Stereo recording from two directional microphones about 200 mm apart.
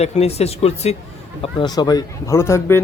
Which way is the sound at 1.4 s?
20° left (ahead or behind).